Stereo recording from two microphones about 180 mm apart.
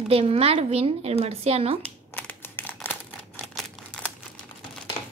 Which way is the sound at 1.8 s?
10° left (ahead or behind).